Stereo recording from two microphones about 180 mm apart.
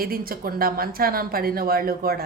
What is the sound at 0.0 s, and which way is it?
A woman's voice, 55° right (ahead or behind).